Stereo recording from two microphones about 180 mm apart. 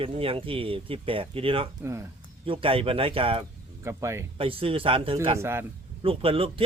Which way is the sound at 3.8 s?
15° right (ahead or behind).